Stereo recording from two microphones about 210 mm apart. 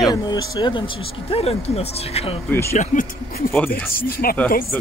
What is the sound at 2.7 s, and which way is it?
Speech, 40° left (ahead or behind).